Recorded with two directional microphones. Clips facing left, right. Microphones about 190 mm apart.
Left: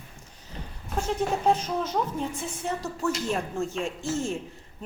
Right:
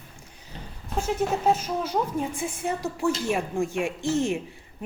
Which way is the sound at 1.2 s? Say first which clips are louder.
Right 1 dB; 5° right (ahead or behind).